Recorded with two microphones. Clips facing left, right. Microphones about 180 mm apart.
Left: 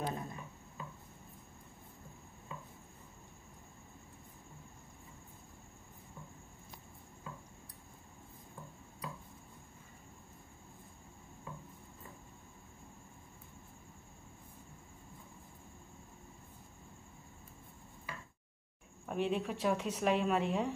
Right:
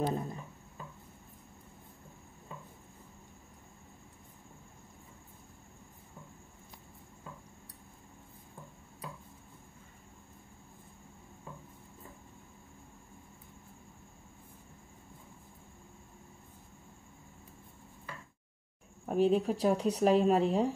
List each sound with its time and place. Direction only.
0.0 s speech: 30° right (ahead or behind)
19.0 s speech: 40° right (ahead or behind)